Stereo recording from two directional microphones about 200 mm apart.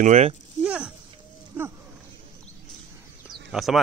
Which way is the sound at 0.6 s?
5° right (ahead or behind).